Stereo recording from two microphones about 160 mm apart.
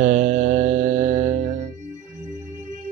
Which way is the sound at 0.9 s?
45° right (ahead or behind).